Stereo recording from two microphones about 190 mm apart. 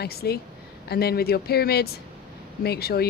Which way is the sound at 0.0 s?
55° left (ahead or behind).